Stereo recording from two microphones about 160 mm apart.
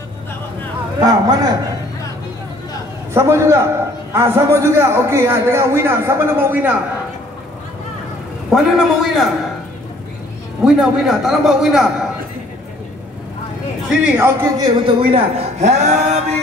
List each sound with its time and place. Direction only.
0.9 s a man's voice: 25° right (ahead or behind)
3.1 s a man's voice: 15° right (ahead or behind)
8.5 s a man's voice: centre (ahead or behind)
10.6 s a man's voice: centre (ahead or behind)
14.1 s a man's voice: 15° right (ahead or behind)
14.8 s a man's voice: 35° right (ahead or behind)